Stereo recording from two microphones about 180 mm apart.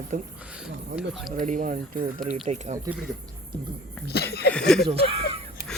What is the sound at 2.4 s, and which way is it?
Speech, 40° right (ahead or behind).